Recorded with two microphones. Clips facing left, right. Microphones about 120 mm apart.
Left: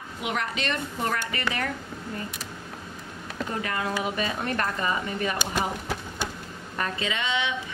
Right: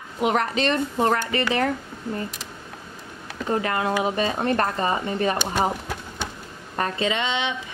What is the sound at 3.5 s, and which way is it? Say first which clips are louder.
A woman's voice: right 7 dB; 40° right (ahead or behind).